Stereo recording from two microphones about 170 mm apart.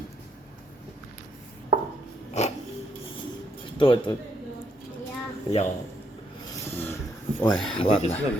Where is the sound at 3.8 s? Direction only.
30° left (ahead or behind).